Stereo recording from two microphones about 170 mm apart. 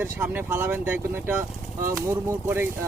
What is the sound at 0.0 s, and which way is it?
Speech, 10° right (ahead or behind).